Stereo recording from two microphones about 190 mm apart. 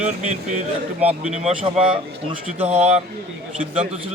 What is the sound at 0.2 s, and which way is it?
A man's voice, 35° right (ahead or behind).